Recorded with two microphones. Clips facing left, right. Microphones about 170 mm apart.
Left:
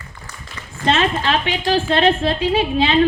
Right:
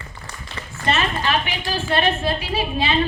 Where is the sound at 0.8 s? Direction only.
90° left.